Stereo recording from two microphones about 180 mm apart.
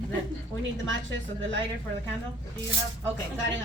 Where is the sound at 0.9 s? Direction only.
90° right.